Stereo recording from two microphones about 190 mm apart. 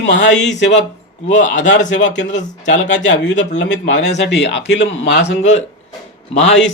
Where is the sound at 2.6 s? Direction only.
70° left (ahead or behind).